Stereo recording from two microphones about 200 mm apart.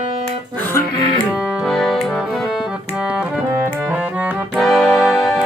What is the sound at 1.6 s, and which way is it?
Music, centre (ahead or behind).